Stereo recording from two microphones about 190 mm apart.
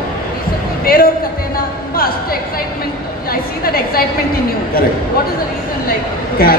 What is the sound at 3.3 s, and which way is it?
Speech, 50° left (ahead or behind).